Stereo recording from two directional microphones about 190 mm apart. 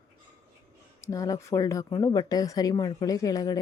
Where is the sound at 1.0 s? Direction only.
15° left (ahead or behind).